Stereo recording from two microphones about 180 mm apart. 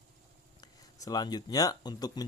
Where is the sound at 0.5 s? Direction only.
20° left (ahead or behind).